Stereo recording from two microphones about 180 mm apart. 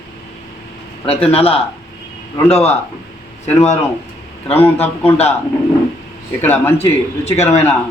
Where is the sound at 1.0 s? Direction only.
35° left (ahead or behind).